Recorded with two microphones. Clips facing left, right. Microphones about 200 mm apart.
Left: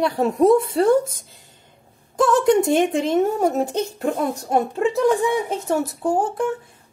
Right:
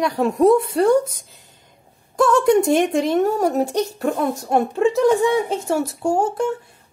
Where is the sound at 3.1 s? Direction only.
20° left (ahead or behind).